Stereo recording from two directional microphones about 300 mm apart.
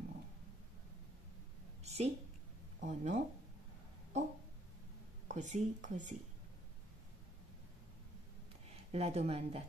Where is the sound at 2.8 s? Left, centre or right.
Right.